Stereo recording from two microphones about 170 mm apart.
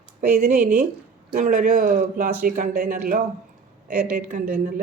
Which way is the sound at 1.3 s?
50° right (ahead or behind).